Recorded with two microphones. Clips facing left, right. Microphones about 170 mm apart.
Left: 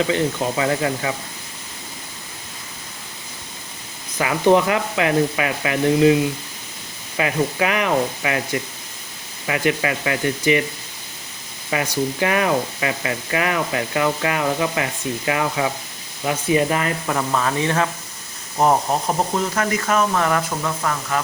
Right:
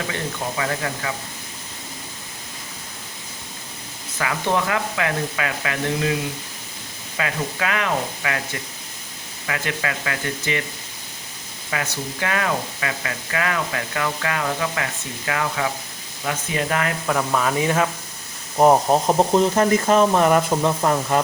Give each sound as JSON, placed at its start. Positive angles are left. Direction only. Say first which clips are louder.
{"t": 0.1, "sound": "speech", "louder": "left 7 dB", "side_deg": 25}
{"t": 4.2, "sound": "speech", "louder": "left 7 dB", "side_deg": 20}
{"t": 7.2, "sound": "speech", "louder": "left 5 dB", "side_deg": 15}
{"t": 9.5, "sound": "speech", "louder": "left 6 dB", "side_deg": 20}
{"t": 11.7, "sound": "speech", "louder": "left 6 dB", "side_deg": 20}
{"t": 16.6, "sound": "speech", "louder": "left 3 dB", "side_deg": 5}
{"t": 18.5, "sound": "speech", "louder": "right 3 dB", "side_deg": -20}